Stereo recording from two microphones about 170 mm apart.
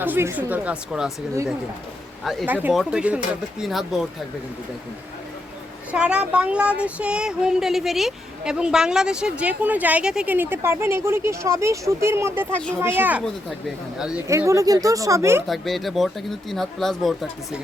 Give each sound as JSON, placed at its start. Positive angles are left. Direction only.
{"t": 0.0, "sound": "speech", "side_deg": -10}
{"t": 2.2, "sound": "speech", "side_deg": 0}
{"t": 2.5, "sound": "speech", "side_deg": -10}
{"t": 5.9, "sound": "speech", "side_deg": -5}
{"t": 14.3, "sound": "speech", "side_deg": -15}
{"t": 15.4, "sound": "speech", "side_deg": 0}